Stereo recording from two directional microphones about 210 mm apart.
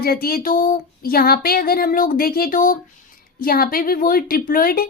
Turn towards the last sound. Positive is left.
turn(degrees=45)  # may be behind; listen again after turning